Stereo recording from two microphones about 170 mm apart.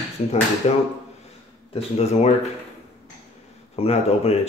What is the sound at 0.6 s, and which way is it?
Speech, 35° left (ahead or behind).